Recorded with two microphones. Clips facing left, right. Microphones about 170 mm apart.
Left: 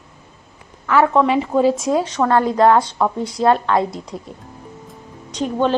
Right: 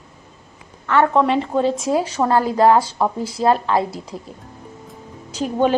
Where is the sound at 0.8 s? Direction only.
5° left (ahead or behind).